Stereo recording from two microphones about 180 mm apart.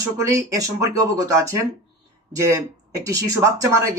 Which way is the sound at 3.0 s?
20° right (ahead or behind).